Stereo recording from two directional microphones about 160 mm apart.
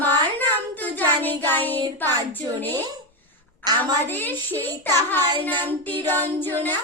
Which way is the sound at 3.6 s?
25° right (ahead or behind).